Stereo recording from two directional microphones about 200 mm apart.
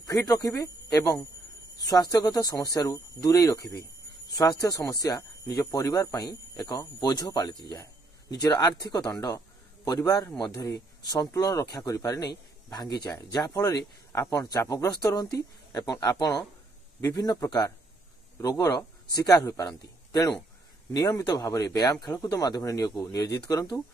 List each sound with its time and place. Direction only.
0.0 s speech: 15° left (ahead or behind)